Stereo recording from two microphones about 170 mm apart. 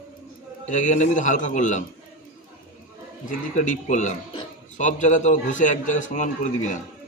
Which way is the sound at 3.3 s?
50° left (ahead or behind).